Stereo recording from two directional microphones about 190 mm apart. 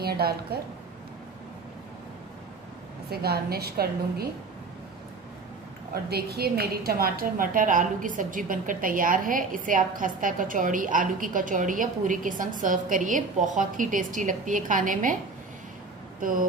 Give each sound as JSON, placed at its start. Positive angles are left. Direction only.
{"t": 0.0, "sound": "a woman's voice", "side_deg": -55}
{"t": 3.1, "sound": "a woman's voice", "side_deg": -55}
{"t": 6.0, "sound": "a woman's voice", "side_deg": -55}
{"t": 16.2, "sound": "a woman's voice", "side_deg": -45}